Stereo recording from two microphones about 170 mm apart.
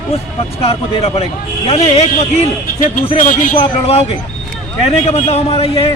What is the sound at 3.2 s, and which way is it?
Speech, 50° left (ahead or behind).